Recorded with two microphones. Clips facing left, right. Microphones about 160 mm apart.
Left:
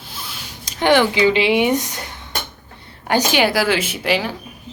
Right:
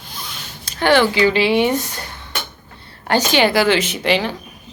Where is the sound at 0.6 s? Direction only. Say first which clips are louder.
Even; 20° left (ahead or behind).